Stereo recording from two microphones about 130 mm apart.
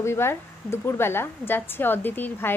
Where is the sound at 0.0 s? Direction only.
20° left (ahead or behind).